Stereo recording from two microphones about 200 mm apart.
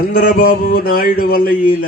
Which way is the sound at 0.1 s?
45° left (ahead or behind).